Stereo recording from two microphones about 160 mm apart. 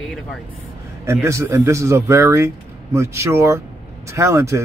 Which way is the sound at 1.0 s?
15° right (ahead or behind).